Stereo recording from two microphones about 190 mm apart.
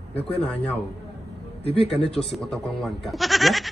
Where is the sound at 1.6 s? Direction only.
30° left (ahead or behind).